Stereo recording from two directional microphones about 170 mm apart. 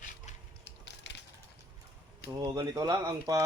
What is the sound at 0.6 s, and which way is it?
Crushing, 90° left.